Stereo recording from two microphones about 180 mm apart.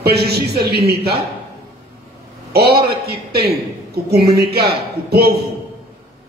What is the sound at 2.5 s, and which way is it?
A man's voice, 60° right (ahead or behind).